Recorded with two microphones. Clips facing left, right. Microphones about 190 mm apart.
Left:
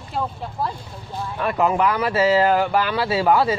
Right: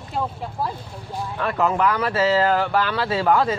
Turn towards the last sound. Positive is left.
turn(degrees=10)  # may be behind; listen again after turning